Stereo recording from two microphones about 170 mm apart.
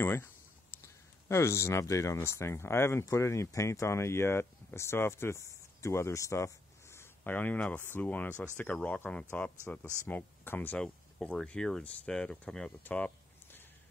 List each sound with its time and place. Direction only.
0.0 s speech: 15° left (ahead or behind)